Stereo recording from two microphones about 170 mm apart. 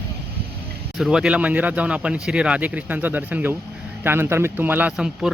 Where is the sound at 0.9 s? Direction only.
Centre (ahead or behind).